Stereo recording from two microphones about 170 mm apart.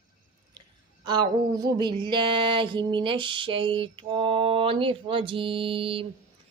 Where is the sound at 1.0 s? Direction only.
25° right (ahead or behind).